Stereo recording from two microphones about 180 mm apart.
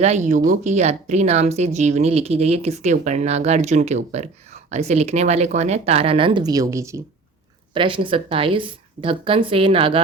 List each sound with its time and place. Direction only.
0.0 s a woman's voice: 40° right (ahead or behind); by 7.0 s 15° right (ahead or behind)
7.7 s a woman's voice: 30° right (ahead or behind)